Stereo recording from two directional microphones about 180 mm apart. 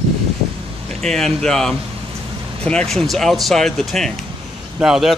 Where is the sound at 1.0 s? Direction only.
5° left (ahead or behind).